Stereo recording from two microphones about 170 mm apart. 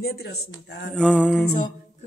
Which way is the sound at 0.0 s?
70° left (ahead or behind).